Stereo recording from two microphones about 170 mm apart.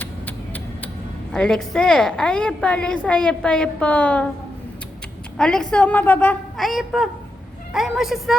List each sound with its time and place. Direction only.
0.0 s vehicle: 10° left (ahead or behind)
1.3 s a woman's voice: 5° left (ahead or behind)
5.4 s a woman's voice: 5° left (ahead or behind)